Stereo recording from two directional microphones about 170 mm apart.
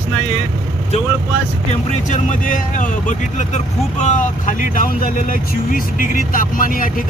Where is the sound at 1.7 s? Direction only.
45° left (ahead or behind).